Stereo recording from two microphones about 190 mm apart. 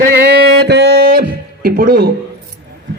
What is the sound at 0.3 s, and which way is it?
Music, 65° right (ahead or behind).